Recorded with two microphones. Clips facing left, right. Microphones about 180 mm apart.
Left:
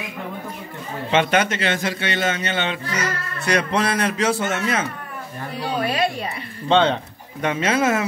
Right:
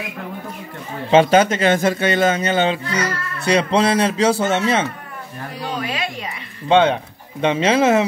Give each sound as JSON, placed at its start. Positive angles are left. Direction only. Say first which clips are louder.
{"t": 1.1, "sound": "a man's voice", "louder": "right 6 dB", "side_deg": -35}
{"t": 6.7, "sound": "speech", "louder": "right 3 dB", "side_deg": -10}
{"t": 7.4, "sound": "speech", "louder": "right 4 dB", "side_deg": -30}